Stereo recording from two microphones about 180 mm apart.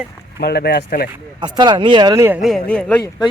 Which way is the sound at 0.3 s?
60° left (ahead or behind).